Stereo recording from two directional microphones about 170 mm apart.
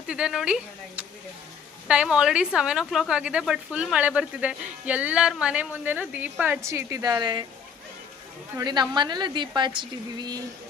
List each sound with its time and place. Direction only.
0.1 s a woman's voice: 5° right (ahead or behind); by 7.4 s 25° right (ahead or behind)
8.5 s speech: 25° right (ahead or behind)